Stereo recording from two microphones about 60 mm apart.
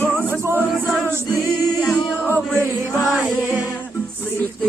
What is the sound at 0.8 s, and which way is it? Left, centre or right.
Music, right.